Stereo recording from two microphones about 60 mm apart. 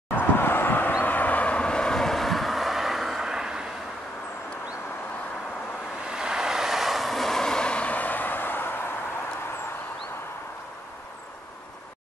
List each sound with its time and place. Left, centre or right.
0.1 s vehicle: left; by 3.6 s centre
6.0 s vehicle: centre; by 8.9 s left